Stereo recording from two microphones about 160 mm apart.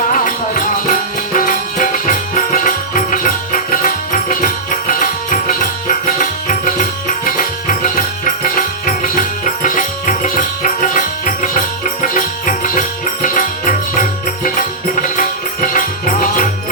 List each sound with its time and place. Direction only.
0.1 s music: 55° left (ahead or behind)